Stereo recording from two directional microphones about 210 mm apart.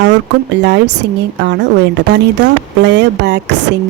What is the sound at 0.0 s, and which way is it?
Speech, 55° right (ahead or behind).